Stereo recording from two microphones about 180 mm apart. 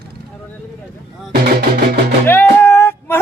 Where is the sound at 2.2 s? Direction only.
10° left (ahead or behind).